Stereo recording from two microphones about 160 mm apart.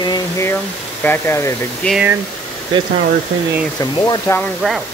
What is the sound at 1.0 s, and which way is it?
Speech, 15° left (ahead or behind).